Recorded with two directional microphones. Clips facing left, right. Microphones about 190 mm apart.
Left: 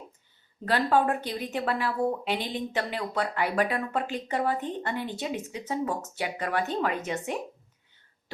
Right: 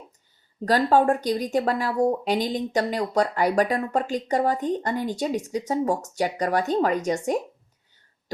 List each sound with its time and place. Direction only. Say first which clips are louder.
0.6 s speech: right 5 dB; 40° right (ahead or behind)